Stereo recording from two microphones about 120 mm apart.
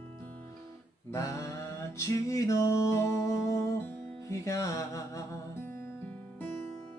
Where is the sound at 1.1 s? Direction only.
25° left (ahead or behind).